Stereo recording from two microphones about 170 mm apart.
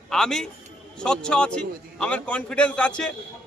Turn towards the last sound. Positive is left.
turn(degrees=5)  # may be behind; listen again after turning